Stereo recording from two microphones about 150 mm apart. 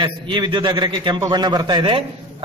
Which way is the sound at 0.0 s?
30° right (ahead or behind).